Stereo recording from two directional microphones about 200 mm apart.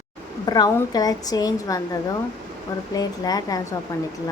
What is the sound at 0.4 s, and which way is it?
A woman's voice, 20° left (ahead or behind).